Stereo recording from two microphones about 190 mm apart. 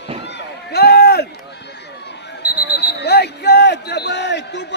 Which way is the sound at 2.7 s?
60° left (ahead or behind).